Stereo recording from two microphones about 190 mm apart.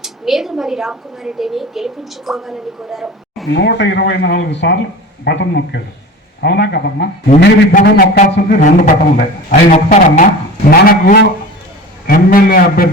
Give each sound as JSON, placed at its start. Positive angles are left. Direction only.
{"t": 0.0, "sound": "a woman's voice", "side_deg": 0}
{"t": 3.5, "sound": "a man's voice", "side_deg": 65}
{"t": 10.7, "sound": "a man's voice", "side_deg": 50}